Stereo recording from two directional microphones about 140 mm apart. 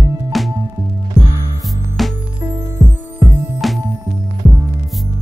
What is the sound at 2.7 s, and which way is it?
Music, 15° right (ahead or behind).